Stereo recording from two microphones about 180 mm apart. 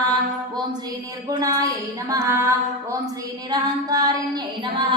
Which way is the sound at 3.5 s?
20° right (ahead or behind).